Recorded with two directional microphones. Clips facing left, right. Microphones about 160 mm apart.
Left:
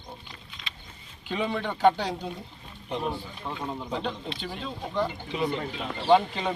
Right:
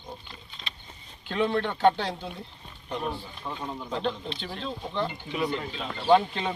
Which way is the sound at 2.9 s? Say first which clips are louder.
Left 1 dB; 20° left (ahead or behind).